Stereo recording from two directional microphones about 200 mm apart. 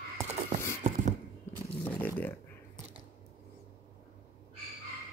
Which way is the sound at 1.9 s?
10° left (ahead or behind).